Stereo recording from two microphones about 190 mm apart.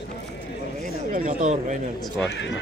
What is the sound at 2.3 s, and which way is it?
Speech, 70° left (ahead or behind).